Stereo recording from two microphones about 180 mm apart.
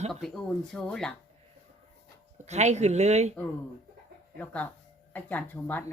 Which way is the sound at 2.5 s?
40° right (ahead or behind).